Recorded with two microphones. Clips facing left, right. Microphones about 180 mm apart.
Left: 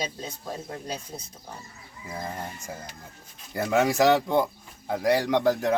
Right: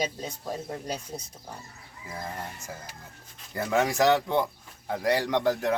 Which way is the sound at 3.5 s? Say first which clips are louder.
Left 3 dB; 10° left (ahead or behind).